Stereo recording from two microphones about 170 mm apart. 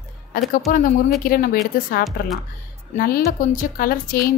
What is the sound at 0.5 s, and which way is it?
A woman's voice, 50° left (ahead or behind).